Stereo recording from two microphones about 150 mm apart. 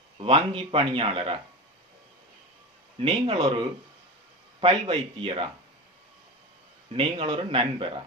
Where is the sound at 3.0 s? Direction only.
40° right (ahead or behind).